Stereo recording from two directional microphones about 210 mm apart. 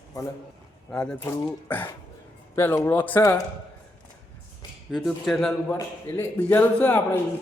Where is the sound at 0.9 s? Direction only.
5° left (ahead or behind).